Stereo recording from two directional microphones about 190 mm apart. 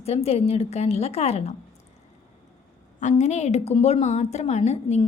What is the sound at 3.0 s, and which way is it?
A woman's voice, 35° left (ahead or behind).